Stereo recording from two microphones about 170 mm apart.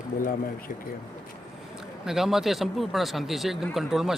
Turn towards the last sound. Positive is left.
turn(degrees=0)  # may be behind; listen again after turning